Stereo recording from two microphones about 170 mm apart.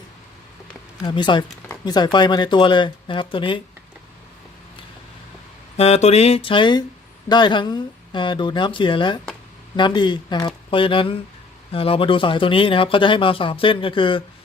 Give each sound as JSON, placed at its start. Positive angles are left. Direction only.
{"t": 1.0, "sound": "speech", "side_deg": 30}
{"t": 5.7, "sound": "speech", "side_deg": 40}